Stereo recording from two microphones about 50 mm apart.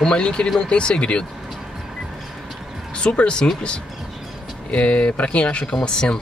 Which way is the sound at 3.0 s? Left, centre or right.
Left.